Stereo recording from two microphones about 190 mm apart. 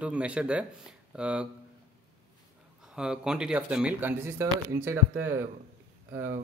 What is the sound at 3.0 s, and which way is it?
Speech, 5° right (ahead or behind).